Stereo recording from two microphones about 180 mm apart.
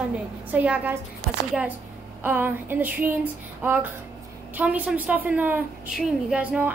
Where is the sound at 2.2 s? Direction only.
10° right (ahead or behind).